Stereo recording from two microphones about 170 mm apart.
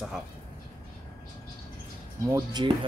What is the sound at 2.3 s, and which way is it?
Speech, 25° right (ahead or behind).